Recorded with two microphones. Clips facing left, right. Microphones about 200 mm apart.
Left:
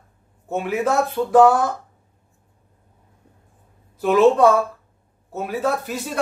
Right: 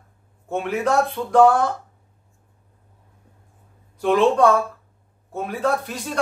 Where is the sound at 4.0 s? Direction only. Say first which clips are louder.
Left 2 dB; 5° left (ahead or behind).